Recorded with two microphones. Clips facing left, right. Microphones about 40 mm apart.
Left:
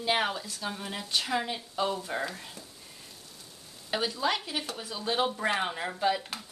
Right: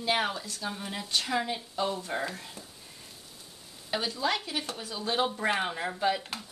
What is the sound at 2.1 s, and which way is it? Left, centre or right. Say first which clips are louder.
Speech: even; centre.